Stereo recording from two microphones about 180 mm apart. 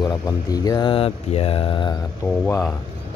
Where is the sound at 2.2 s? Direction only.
10° left (ahead or behind).